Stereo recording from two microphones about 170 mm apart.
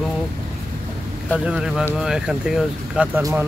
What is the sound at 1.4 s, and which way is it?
Speech, 5° right (ahead or behind).